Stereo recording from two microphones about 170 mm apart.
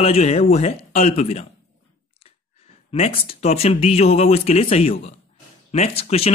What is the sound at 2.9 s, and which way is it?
Speech, 35° left (ahead or behind).